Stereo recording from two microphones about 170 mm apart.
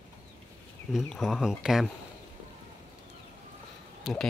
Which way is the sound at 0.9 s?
Centre (ahead or behind).